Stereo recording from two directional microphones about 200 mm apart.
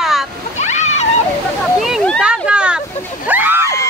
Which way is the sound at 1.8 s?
Centre (ahead or behind).